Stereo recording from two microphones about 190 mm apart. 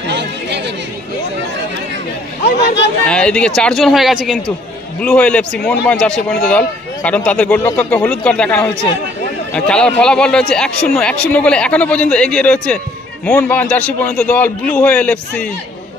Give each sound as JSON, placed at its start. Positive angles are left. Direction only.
{"t": 0.1, "sound": "chatter", "side_deg": -65}
{"t": 2.4, "sound": "speech", "side_deg": 65}
{"t": 3.1, "sound": "speech", "side_deg": 5}